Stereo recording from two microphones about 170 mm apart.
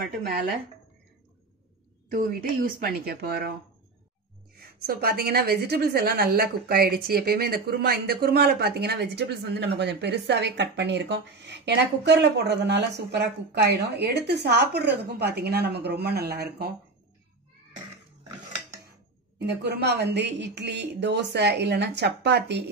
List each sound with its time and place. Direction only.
2.0 s speech: 55° right (ahead or behind)
4.6 s a woman's voice: 65° right (ahead or behind)
19.3 s a woman's voice: 80° right